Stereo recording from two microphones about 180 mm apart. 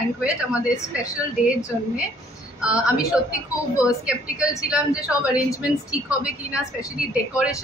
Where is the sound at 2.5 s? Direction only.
5° right (ahead or behind).